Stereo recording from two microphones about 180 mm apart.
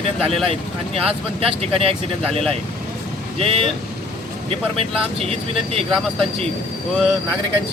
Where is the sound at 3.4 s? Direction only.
30° right (ahead or behind).